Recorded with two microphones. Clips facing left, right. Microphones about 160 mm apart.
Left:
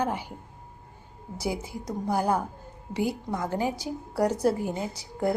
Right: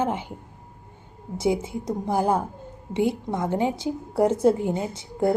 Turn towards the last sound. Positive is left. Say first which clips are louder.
# right 4 dB
turn(degrees=-25)  # may be behind; listen again after turning